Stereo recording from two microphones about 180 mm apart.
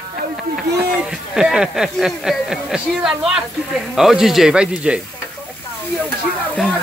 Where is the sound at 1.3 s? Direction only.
5° right (ahead or behind).